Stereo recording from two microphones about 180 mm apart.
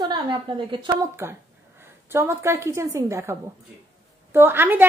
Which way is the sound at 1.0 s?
15° right (ahead or behind).